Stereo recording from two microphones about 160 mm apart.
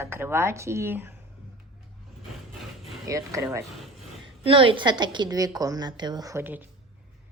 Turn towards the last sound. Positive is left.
turn(degrees=-10)  # may be behind; listen again after turning